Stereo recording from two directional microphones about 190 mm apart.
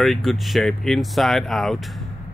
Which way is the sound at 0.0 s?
Centre (ahead or behind).